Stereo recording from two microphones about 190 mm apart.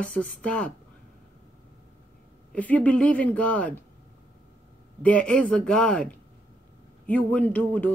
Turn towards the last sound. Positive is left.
turn(degrees=10)  # may be behind; listen again after turning